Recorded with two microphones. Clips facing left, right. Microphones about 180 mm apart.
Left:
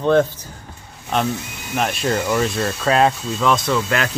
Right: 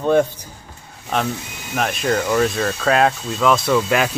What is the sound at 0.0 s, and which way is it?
Speech, 10° right (ahead or behind).